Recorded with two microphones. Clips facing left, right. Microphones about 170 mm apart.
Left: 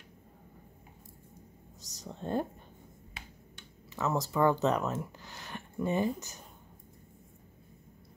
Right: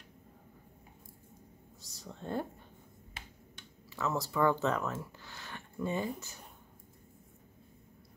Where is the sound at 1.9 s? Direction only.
20° left (ahead or behind).